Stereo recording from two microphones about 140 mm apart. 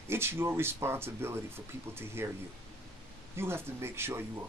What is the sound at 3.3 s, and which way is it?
Speech, 15° right (ahead or behind).